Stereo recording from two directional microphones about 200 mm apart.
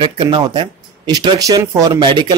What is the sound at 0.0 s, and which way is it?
Speech, 20° right (ahead or behind).